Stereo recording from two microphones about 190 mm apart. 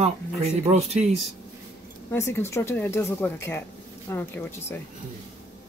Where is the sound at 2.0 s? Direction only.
15° left (ahead or behind).